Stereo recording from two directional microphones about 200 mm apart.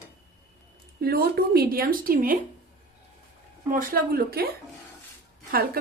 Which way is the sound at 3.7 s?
45° right (ahead or behind).